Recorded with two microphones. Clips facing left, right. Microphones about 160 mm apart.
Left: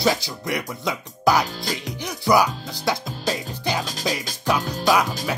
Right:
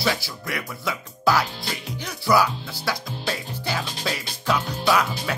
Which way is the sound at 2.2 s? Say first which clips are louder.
Left 2 dB; 15° left (ahead or behind).